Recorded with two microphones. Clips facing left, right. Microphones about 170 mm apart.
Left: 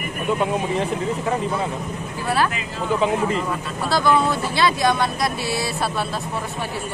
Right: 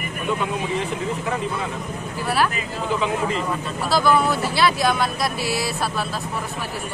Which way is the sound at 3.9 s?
5° right (ahead or behind).